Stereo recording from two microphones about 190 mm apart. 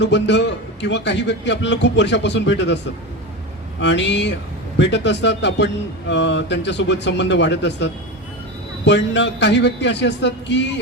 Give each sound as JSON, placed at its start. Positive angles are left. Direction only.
{"t": 0.0, "sound": "a man's voice", "side_deg": 70}
{"t": 3.8, "sound": "a man's voice", "side_deg": 70}